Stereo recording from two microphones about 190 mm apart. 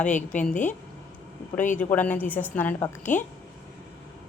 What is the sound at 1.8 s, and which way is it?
A woman's voice, 10° left (ahead or behind).